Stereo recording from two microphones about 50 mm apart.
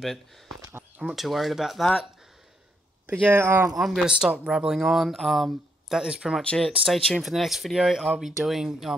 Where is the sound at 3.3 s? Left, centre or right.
Right.